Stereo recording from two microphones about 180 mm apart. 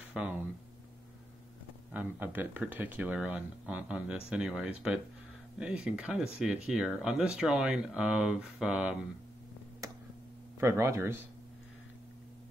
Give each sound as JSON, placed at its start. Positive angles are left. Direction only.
{"t": 0.1, "sound": "speech", "side_deg": -10}
{"t": 1.9, "sound": "speech", "side_deg": -10}
{"t": 10.6, "sound": "speech", "side_deg": -15}